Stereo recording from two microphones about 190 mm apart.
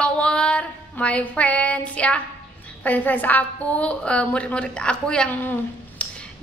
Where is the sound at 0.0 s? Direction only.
5° left (ahead or behind).